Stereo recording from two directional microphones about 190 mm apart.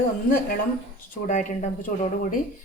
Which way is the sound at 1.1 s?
40° left (ahead or behind).